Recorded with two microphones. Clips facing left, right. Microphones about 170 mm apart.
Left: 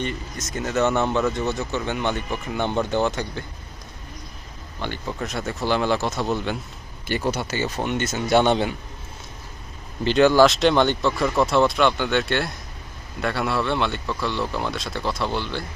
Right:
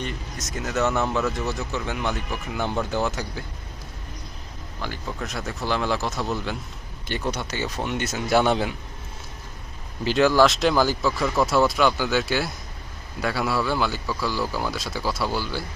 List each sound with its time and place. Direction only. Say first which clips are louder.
0.0 s speech: left 3 dB; centre (ahead or behind)
4.8 s speech: left 3 dB; centre (ahead or behind)
10.0 s speech: left 3 dB; 5° right (ahead or behind)